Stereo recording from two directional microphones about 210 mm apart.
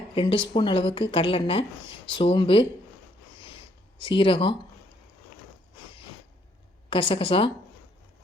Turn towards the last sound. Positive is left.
turn(degrees=25)  # may be behind; listen again after turning